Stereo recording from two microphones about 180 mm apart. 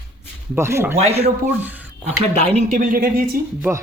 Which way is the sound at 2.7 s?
50° right (ahead or behind).